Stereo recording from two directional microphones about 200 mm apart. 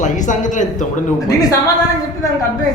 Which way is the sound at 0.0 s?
40° left (ahead or behind).